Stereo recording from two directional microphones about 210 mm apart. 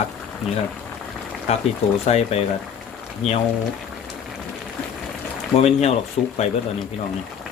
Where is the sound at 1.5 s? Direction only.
30° left (ahead or behind).